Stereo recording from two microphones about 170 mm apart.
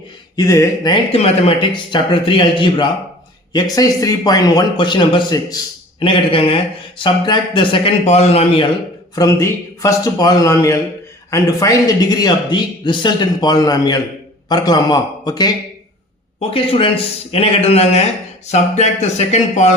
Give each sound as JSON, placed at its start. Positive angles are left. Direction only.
{"t": 0.3, "sound": "a man's voice", "side_deg": 20}
{"t": 1.1, "sound": "a man's voice", "side_deg": 35}
{"t": 9.1, "sound": "a man's voice", "side_deg": 20}